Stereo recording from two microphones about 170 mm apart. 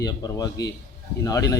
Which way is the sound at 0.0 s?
20° left (ahead or behind).